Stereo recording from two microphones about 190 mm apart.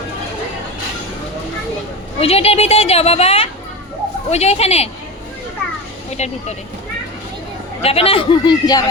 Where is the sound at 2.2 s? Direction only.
30° left (ahead or behind).